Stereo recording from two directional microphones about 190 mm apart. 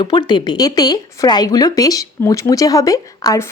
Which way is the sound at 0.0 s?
25° left (ahead or behind).